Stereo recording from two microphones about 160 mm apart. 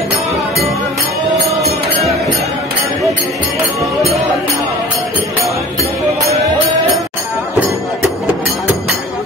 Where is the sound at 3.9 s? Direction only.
Centre (ahead or behind).